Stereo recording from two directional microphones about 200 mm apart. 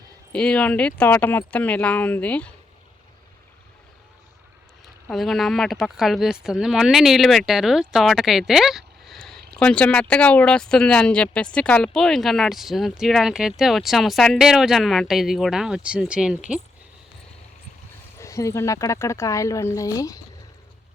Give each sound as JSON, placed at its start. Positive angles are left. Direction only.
{"t": 0.3, "sound": "speech", "side_deg": 5}
{"t": 5.0, "sound": "speech", "side_deg": 0}
{"t": 18.2, "sound": "speech", "side_deg": 15}